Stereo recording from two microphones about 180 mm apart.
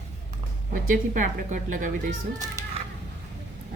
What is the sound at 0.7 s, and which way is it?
A woman's voice, 50° right (ahead or behind).